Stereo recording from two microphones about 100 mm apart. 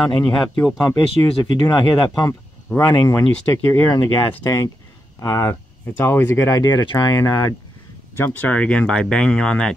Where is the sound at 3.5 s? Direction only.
20° left (ahead or behind).